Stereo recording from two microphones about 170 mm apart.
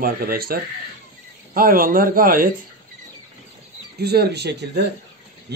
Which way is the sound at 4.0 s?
70° right (ahead or behind).